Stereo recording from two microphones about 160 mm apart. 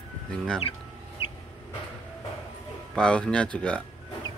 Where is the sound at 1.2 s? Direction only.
35° left (ahead or behind).